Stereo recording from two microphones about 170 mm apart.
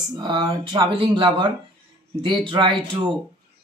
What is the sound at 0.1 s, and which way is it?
Speech, 25° right (ahead or behind).